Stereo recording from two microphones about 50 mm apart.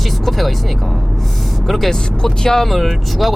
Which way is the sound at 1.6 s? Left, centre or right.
Centre.